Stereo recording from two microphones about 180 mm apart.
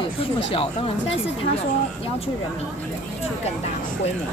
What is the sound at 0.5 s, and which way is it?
Speech, 30° left (ahead or behind).